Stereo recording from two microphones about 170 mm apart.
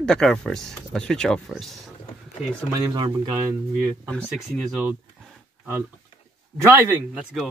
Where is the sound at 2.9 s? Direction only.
25° right (ahead or behind).